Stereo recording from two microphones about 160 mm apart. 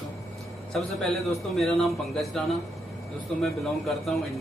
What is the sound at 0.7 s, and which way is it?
A man's voice, centre (ahead or behind).